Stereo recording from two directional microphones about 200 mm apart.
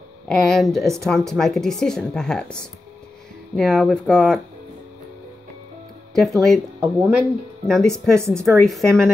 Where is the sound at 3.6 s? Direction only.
Centre (ahead or behind).